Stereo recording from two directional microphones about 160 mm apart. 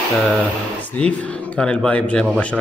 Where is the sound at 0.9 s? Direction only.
10° left (ahead or behind).